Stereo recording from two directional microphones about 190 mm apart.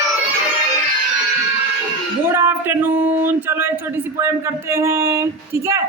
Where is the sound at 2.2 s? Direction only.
10° right (ahead or behind).